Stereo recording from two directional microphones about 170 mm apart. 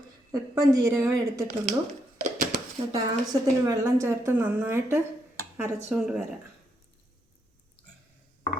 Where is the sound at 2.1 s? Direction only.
50° right (ahead or behind).